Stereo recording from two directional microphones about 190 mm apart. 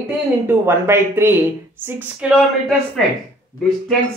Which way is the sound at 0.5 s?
15° right (ahead or behind).